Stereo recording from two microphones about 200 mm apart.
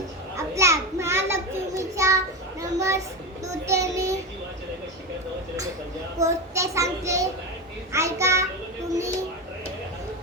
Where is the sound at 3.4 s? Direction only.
15° right (ahead or behind).